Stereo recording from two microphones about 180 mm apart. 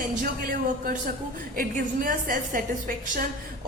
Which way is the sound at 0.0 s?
50° right (ahead or behind).